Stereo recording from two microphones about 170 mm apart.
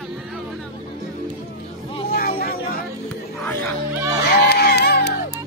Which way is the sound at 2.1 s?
60° left (ahead or behind).